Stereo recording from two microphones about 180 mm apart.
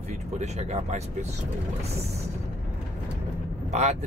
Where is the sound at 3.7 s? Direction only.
40° right (ahead or behind).